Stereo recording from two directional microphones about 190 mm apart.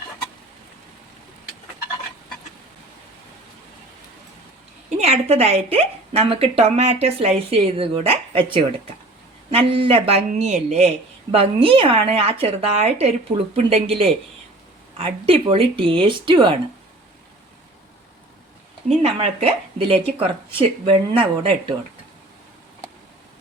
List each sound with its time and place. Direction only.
4.9 s speech: 35° right (ahead or behind)
18.9 s speech: 35° right (ahead or behind)